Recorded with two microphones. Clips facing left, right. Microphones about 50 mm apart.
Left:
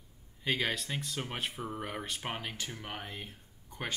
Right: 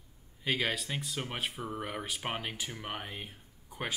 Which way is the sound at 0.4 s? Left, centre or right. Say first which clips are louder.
Even; centre.